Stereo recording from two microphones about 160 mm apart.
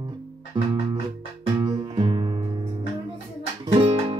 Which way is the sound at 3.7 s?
35° right (ahead or behind).